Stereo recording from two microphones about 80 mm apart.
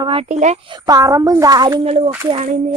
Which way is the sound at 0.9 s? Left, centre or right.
Right.